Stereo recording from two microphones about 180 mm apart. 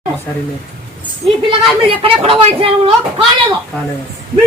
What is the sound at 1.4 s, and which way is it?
A woman's voice, 30° right (ahead or behind).